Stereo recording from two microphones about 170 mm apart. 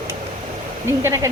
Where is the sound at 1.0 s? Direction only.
15° right (ahead or behind).